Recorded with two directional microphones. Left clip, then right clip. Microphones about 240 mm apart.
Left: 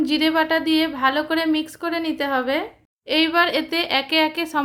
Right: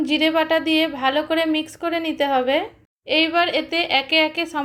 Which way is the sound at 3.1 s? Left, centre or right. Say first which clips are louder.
Even; centre.